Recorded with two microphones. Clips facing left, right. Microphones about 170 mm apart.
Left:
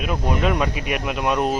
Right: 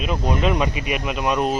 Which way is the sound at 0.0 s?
5° left (ahead or behind).